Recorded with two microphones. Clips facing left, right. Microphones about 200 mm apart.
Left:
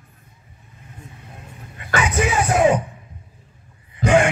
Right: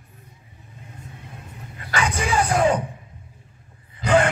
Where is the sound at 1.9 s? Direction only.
5° left (ahead or behind).